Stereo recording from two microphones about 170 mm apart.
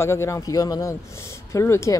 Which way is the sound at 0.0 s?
15° left (ahead or behind).